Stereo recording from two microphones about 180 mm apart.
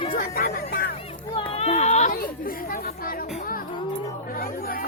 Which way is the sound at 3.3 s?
50° left (ahead or behind).